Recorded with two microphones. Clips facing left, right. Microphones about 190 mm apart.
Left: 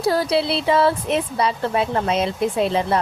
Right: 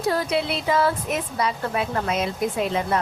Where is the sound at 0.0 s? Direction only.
35° left (ahead or behind).